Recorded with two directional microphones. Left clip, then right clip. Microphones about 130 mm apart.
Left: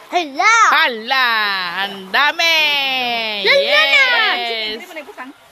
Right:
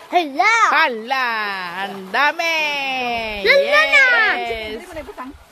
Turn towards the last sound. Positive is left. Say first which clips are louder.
# left 4 dB
turn(degrees=0)  # may be behind; listen again after turning